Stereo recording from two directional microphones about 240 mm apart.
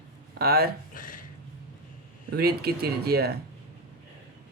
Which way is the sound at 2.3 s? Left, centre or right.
Right.